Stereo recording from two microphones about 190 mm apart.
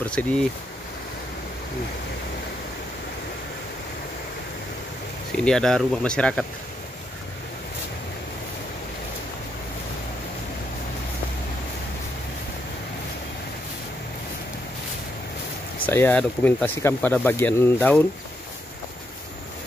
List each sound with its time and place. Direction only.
0.0 s speech: 5° left (ahead or behind)
5.4 s speech: 5° left (ahead or behind)
15.8 s speech: 10° left (ahead or behind)